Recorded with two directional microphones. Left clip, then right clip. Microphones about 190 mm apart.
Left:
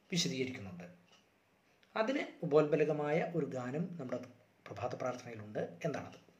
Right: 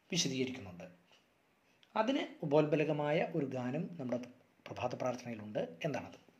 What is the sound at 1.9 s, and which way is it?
Mantra, 35° right (ahead or behind).